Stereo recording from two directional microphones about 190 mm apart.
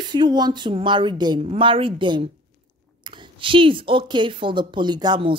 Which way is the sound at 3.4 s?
25° right (ahead or behind).